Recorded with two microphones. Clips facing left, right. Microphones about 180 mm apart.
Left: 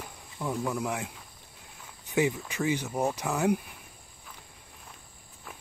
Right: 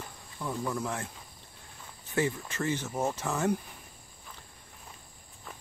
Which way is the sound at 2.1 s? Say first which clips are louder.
Left 3 dB; 15° left (ahead or behind).